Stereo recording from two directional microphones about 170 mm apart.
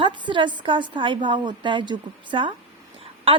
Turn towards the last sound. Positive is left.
turn(degrees=-30)  # may be behind; listen again after turning